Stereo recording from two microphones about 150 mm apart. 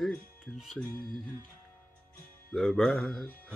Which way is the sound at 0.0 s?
5° left (ahead or behind).